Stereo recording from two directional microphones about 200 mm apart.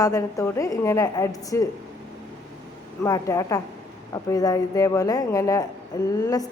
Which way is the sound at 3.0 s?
15° left (ahead or behind).